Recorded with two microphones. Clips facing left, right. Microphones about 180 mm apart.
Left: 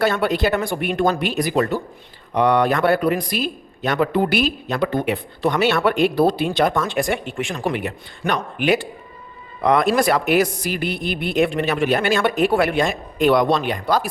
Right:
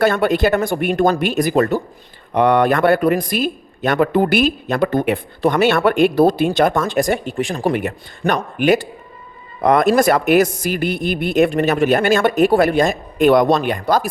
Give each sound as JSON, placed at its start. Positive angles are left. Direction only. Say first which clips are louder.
{"t": 0.0, "sound": "speech", "louder": "right 4 dB", "side_deg": -50}